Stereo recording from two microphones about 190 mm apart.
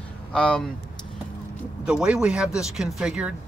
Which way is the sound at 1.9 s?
5° right (ahead or behind).